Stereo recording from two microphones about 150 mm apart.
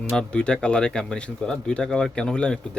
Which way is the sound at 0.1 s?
5° left (ahead or behind).